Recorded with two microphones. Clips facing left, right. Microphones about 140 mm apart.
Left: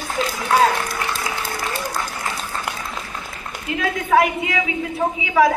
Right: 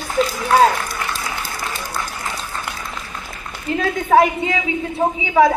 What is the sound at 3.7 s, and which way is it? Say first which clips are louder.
Speech: right 4 dB; 35° right (ahead or behind).